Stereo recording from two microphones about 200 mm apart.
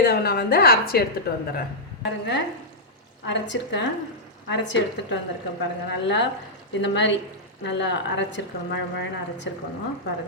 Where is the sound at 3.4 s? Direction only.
65° left (ahead or behind).